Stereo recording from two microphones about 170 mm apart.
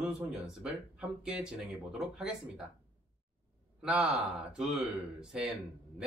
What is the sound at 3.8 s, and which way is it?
Speech, 5° right (ahead or behind).